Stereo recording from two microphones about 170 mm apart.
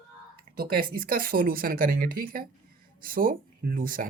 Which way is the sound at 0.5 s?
55° right (ahead or behind).